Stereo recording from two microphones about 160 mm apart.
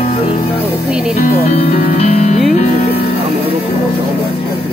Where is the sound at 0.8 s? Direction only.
5° right (ahead or behind).